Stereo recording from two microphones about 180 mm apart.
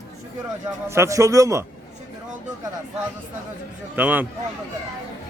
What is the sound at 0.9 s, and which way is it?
Speech, 15° right (ahead or behind).